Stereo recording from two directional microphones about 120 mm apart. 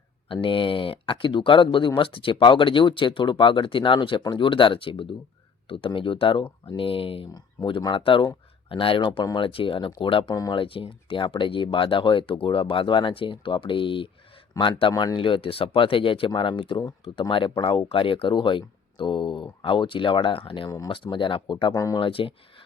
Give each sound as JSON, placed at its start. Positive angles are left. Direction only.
{"t": 0.4, "sound": "speech", "side_deg": 45}
{"t": 20.7, "sound": "speech", "side_deg": 30}
{"t": 20.9, "sound": "speech", "side_deg": 45}
{"t": 21.8, "sound": "speech", "side_deg": 30}
{"t": 22.0, "sound": "speech", "side_deg": 50}